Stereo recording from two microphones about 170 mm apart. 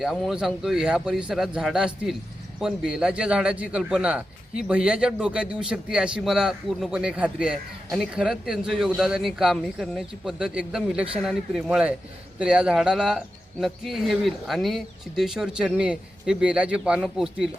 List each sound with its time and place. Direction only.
0.0 s a man's voice: centre (ahead or behind)